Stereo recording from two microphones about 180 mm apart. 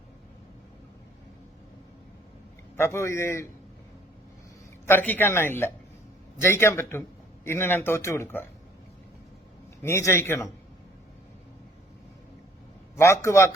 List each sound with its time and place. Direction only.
2.7 s speech: 15° left (ahead or behind)
4.9 s speech: 10° left (ahead or behind)
9.8 s speech: 15° left (ahead or behind)
13.0 s speech: 15° left (ahead or behind)